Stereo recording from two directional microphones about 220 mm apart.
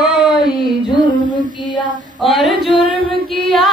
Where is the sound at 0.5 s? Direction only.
20° left (ahead or behind).